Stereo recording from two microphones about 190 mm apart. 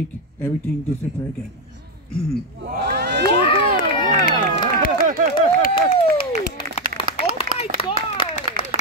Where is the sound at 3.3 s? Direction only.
30° left (ahead or behind).